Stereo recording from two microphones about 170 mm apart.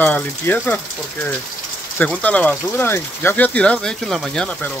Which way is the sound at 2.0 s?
10° left (ahead or behind).